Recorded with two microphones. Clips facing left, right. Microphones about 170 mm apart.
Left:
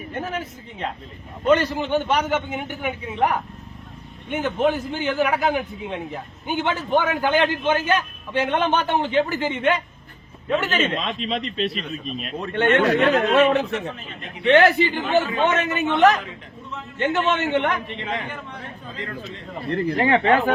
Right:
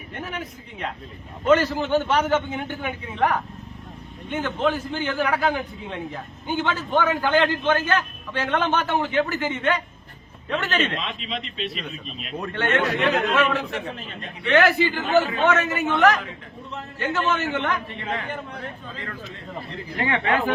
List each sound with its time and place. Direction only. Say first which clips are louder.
0.1 s speech: left 3 dB; 25° left (ahead or behind)
1.5 s a man's voice: right 1 dB; 15° left (ahead or behind)
10.7 s a man's voice: left 1 dB; centre (ahead or behind)
10.9 s speech: left 5 dB; 40° left (ahead or behind)
13.7 s a man's voice: left 3 dB; 35° right (ahead or behind)
14.4 s a man's voice: left 3 dB; 20° left (ahead or behind)
20.0 s speech: left 4 dB; 35° left (ahead or behind)